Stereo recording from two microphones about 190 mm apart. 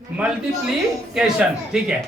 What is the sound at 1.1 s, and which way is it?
Speech, 5° right (ahead or behind).